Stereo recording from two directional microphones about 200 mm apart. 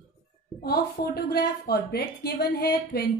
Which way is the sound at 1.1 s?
50° left (ahead or behind).